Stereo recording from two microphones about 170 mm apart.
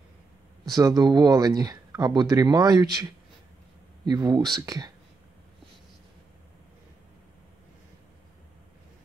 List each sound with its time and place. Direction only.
0.7 s speech: 20° right (ahead or behind)